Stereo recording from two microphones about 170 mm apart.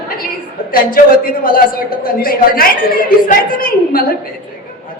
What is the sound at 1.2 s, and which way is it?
A man's voice, 55° left (ahead or behind).